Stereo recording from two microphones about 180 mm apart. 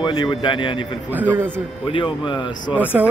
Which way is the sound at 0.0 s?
25° left (ahead or behind).